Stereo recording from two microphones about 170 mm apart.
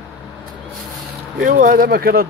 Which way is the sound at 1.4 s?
55° right (ahead or behind).